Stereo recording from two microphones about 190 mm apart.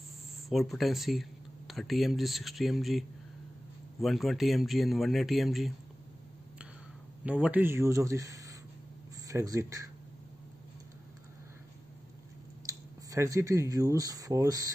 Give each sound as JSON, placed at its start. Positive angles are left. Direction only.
{"t": 0.5, "sound": "speech", "side_deg": 0}
{"t": 7.2, "sound": "speech", "side_deg": -5}
{"t": 12.6, "sound": "speech", "side_deg": -15}